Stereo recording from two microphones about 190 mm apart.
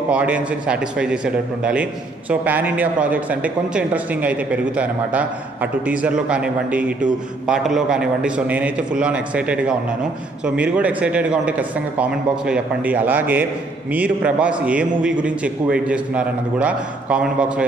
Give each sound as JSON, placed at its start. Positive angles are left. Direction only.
{"t": 0.1, "sound": "a man's voice", "side_deg": -5}